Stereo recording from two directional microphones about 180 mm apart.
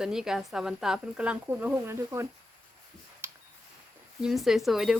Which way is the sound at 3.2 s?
15° right (ahead or behind).